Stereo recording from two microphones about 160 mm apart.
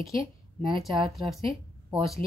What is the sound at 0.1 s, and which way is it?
Speech, 35° right (ahead or behind).